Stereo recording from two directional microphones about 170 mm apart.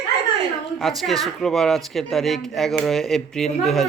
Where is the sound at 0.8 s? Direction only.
Centre (ahead or behind).